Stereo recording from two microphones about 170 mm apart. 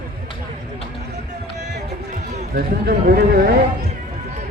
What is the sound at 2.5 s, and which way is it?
Speech, 60° right (ahead or behind).